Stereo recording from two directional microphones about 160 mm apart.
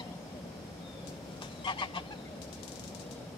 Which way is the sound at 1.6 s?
30° left (ahead or behind).